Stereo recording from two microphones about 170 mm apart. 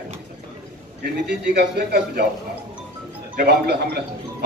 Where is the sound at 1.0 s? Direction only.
70° right (ahead or behind).